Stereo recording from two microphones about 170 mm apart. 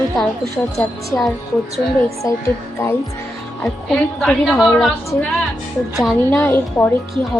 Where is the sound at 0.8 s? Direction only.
Centre (ahead or behind).